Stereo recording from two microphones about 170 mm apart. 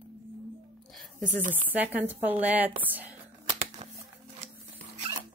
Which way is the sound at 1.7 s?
10° right (ahead or behind).